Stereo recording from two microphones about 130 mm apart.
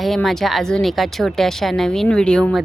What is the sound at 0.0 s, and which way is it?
Speech, centre (ahead or behind).